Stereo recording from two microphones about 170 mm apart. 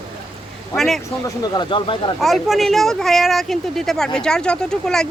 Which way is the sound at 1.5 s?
30° left (ahead or behind).